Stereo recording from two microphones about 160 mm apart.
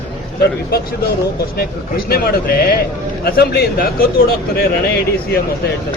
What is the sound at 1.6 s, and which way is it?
A man's voice, 75° left (ahead or behind).